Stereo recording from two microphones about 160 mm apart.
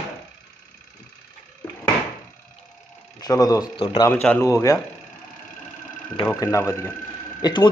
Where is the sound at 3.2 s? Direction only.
25° left (ahead or behind).